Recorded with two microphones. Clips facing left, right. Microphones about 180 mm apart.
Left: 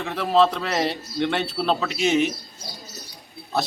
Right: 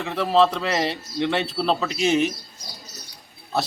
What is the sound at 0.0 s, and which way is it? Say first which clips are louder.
A man's voice: even; centre (ahead or behind).